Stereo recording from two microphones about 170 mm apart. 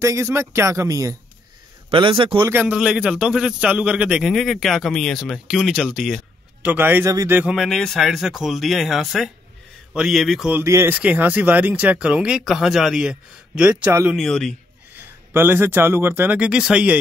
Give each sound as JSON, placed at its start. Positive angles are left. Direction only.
{"t": 0.0, "sound": "speech", "side_deg": -15}
{"t": 1.9, "sound": "a man's voice", "side_deg": -30}
{"t": 2.5, "sound": "a man's voice", "side_deg": -10}
{"t": 7.5, "sound": "a man's voice", "side_deg": 5}
{"t": 10.6, "sound": "speech", "side_deg": -15}
{"t": 14.1, "sound": "a man's voice", "side_deg": 5}
{"t": 15.3, "sound": "speech", "side_deg": -15}